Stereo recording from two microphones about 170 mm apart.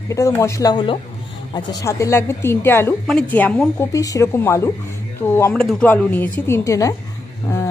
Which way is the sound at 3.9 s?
20° left (ahead or behind).